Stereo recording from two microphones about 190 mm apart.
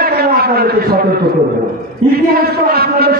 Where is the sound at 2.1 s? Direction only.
55° right (ahead or behind).